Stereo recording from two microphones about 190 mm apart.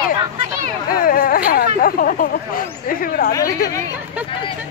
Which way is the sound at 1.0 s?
50° left (ahead or behind).